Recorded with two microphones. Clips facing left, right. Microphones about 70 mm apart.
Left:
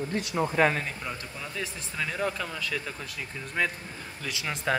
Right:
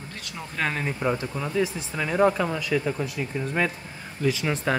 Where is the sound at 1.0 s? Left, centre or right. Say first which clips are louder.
Right 11 dB; right.